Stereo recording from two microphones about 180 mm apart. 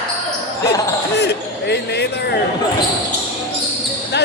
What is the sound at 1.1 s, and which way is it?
Speech, 70° left (ahead or behind).